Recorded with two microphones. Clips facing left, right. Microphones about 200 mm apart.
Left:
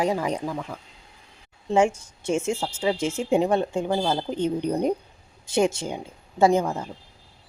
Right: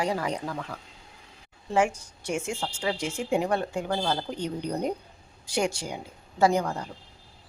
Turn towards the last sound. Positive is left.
turn(degrees=20)  # may be behind; listen again after turning